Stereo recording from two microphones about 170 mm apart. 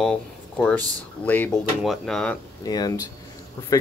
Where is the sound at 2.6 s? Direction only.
20° left (ahead or behind).